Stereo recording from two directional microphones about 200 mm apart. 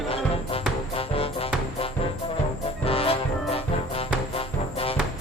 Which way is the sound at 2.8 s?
30° left (ahead or behind).